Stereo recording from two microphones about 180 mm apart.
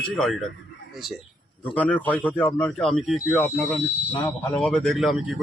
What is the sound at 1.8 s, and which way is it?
Speech, 10° left (ahead or behind).